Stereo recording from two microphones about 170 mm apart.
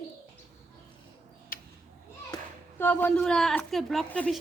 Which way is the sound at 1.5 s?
55° left (ahead or behind).